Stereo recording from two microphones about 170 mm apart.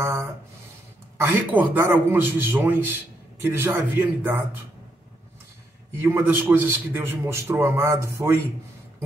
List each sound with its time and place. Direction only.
0.0 s a man's voice: 15° right (ahead or behind)
5.9 s a man's voice: 15° right (ahead or behind)